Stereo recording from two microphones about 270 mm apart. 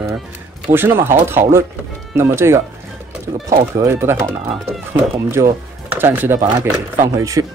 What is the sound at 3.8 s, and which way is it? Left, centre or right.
Speech, centre.